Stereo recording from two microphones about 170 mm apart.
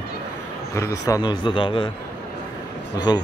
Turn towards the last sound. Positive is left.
turn(degrees=25)  # may be behind; listen again after turning